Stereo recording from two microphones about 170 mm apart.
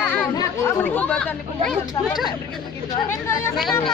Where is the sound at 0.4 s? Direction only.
10° left (ahead or behind).